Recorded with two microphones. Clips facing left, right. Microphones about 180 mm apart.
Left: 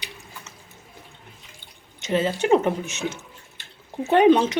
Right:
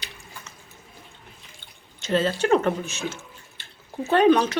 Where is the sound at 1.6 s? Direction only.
15° left (ahead or behind).